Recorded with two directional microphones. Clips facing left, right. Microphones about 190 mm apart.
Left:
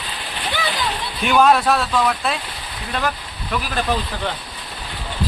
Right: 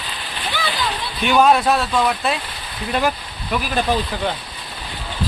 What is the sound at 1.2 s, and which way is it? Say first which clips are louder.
Speech: even; centre (ahead or behind).